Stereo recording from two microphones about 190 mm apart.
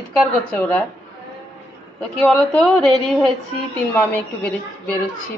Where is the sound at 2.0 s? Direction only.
5° left (ahead or behind).